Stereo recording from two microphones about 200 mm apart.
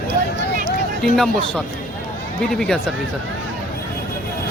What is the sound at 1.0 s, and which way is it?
Speech, centre (ahead or behind).